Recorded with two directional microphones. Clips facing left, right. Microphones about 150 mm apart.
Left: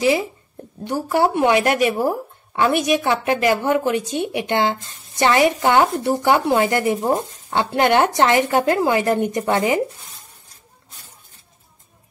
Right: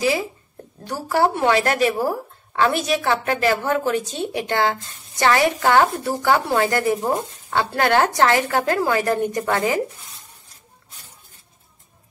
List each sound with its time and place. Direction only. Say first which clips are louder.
0.0 s a woman's voice: left 3 dB; 20° left (ahead or behind)
7.0 s speech: left 2 dB; centre (ahead or behind)
7.4 s a woman's voice: left 2 dB; 20° left (ahead or behind)